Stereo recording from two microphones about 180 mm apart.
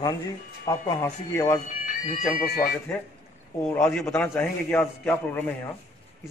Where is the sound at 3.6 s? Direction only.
10° left (ahead or behind).